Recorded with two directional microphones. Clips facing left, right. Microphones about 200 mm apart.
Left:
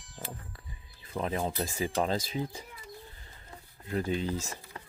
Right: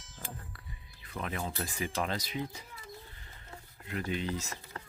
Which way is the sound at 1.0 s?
30° left (ahead or behind).